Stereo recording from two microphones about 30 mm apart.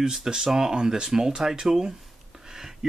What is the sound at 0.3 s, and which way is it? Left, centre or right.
Speech, centre.